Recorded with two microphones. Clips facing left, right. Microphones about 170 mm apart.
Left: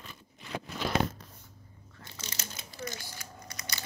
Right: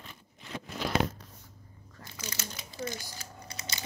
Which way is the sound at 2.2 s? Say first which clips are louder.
Right 4 dB; 25° left (ahead or behind).